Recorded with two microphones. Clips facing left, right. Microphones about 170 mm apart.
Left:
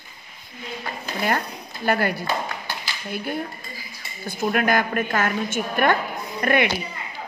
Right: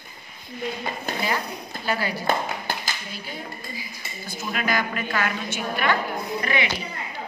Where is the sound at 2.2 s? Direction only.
50° right (ahead or behind).